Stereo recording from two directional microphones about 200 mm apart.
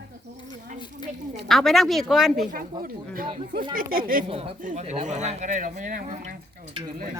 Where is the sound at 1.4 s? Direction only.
Centre (ahead or behind).